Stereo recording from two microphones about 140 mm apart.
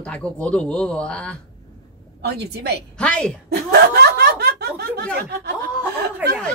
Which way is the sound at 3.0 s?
5° left (ahead or behind).